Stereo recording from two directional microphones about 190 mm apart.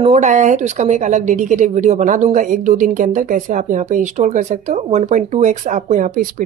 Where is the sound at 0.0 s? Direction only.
35° right (ahead or behind).